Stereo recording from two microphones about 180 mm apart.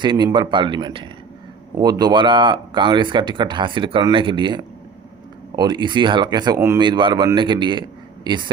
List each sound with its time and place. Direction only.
0.0 s speech: 25° right (ahead or behind)